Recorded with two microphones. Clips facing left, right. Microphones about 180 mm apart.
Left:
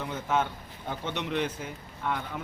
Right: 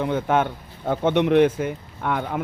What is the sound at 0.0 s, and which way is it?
A man's voice, 55° right (ahead or behind).